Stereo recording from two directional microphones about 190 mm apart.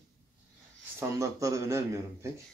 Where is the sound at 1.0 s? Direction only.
15° right (ahead or behind).